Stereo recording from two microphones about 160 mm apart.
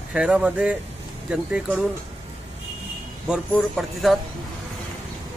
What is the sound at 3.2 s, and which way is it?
Speech, centre (ahead or behind).